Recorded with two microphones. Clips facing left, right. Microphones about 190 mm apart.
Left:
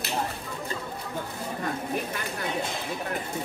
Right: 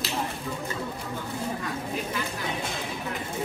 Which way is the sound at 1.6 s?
50° left (ahead or behind).